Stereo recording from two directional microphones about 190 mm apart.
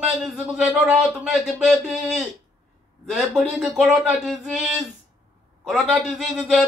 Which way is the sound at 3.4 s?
Centre (ahead or behind).